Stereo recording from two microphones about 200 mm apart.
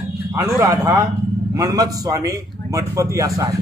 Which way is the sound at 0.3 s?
10° right (ahead or behind).